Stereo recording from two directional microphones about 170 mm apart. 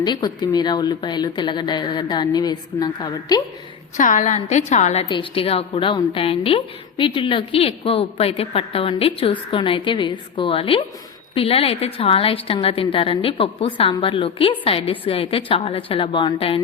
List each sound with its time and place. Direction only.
0.0 s a woman's voice: 25° left (ahead or behind)
3.9 s a woman's voice: 45° left (ahead or behind)
5.0 s a woman's voice: 30° left (ahead or behind)